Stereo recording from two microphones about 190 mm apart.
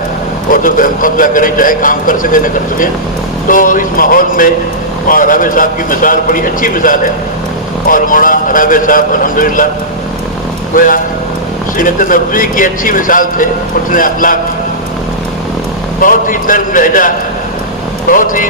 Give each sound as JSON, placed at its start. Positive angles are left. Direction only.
{"t": 0.5, "sound": "a man's voice", "side_deg": 45}
{"t": 10.8, "sound": "a man's voice", "side_deg": 45}
{"t": 16.0, "sound": "a man's voice", "side_deg": 45}
{"t": 18.1, "sound": "a man's voice", "side_deg": 45}